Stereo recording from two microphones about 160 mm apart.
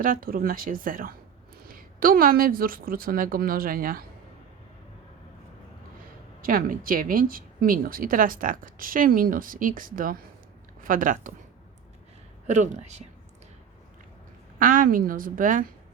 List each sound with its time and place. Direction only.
0.0 s speech: 60° right (ahead or behind)
6.4 s speech: 65° right (ahead or behind)
12.5 s speech: 50° right (ahead or behind)
14.6 s speech: 60° right (ahead or behind)